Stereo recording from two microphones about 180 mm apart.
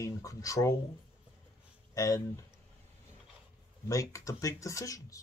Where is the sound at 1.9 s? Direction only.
20° left (ahead or behind).